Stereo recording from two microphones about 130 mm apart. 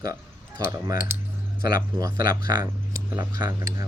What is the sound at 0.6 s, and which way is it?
Speech, 25° right (ahead or behind).